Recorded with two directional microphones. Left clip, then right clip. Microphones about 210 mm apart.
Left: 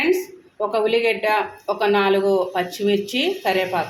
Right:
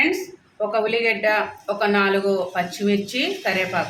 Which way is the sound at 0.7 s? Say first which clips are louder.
Left 2 dB; 20° left (ahead or behind).